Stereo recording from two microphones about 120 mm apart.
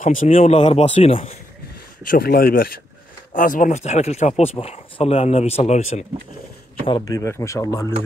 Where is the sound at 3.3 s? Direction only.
90° left; by 4.5 s 65° left (ahead or behind).